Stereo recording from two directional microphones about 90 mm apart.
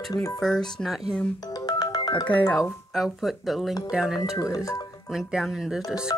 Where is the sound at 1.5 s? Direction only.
45° left (ahead or behind).